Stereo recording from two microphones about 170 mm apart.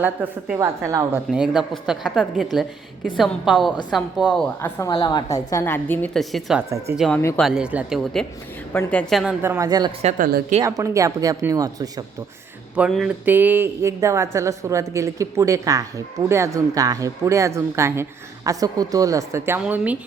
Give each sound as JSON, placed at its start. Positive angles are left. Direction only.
{"t": 0.0, "sound": "a sound", "side_deg": -10}
{"t": 1.3, "sound": "speech", "side_deg": -5}
{"t": 4.8, "sound": "a woman's voice", "side_deg": 25}
{"t": 6.1, "sound": "speech", "side_deg": 0}
{"t": 6.6, "sound": "a sound", "side_deg": -15}
{"t": 6.9, "sound": "speech", "side_deg": 0}
{"t": 7.2, "sound": "a woman's voice", "side_deg": 15}
{"t": 7.4, "sound": "a woman's voice", "side_deg": -5}
{"t": 9.4, "sound": "speech", "side_deg": -15}
{"t": 10.0, "sound": "speech", "side_deg": -40}
{"t": 10.6, "sound": "speech", "side_deg": -20}
{"t": 12.7, "sound": "a sound", "side_deg": -5}
{"t": 18.4, "sound": "speech", "side_deg": -20}
{"t": 19.5, "sound": "a sound", "side_deg": -10}